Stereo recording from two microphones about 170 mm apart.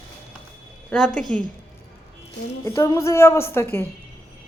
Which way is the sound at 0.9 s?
5° left (ahead or behind).